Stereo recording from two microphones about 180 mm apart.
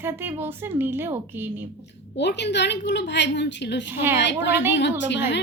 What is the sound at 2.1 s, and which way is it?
A woman's voice, 70° left (ahead or behind).